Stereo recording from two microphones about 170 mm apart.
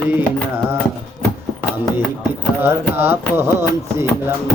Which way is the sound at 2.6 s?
10° right (ahead or behind).